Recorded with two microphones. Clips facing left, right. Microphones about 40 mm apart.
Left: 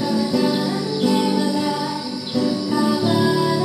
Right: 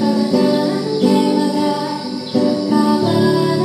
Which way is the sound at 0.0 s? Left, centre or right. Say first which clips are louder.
Right 5 dB; centre.